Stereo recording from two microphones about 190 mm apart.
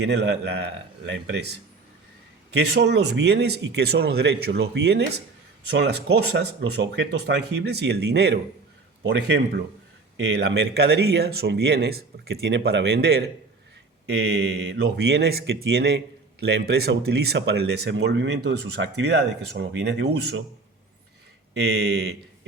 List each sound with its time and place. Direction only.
0.0 s speech: 65° right (ahead or behind)
2.6 s speech: 60° right (ahead or behind)
12.3 s speech: 70° right (ahead or behind)
21.5 s speech: 65° right (ahead or behind)